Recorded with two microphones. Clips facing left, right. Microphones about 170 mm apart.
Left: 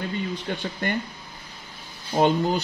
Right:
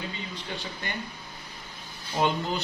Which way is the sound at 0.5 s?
55° left (ahead or behind).